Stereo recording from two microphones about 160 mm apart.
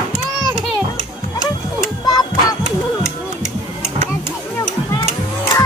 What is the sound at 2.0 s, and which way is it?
Music, 25° left (ahead or behind).